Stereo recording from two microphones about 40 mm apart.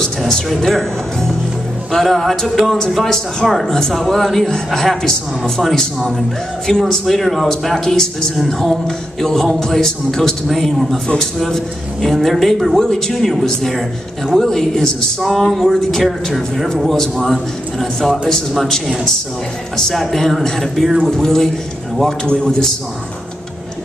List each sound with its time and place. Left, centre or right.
0.3 s a man's voice: centre
15.1 s a man's voice: centre
19.8 s a man's voice: centre